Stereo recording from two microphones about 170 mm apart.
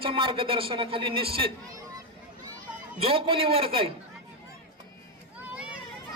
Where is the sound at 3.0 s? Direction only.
35° right (ahead or behind).